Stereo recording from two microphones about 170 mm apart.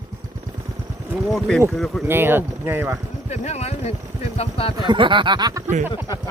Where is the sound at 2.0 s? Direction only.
15° right (ahead or behind).